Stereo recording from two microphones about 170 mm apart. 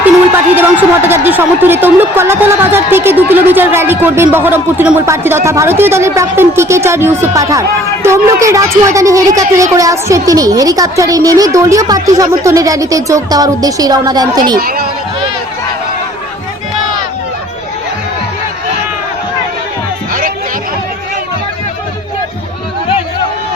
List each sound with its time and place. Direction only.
0.5 s a woman's voice: 10° right (ahead or behind)
14.6 s speech: 60° right (ahead or behind)